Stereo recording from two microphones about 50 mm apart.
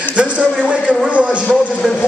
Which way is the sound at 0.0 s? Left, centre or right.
Right.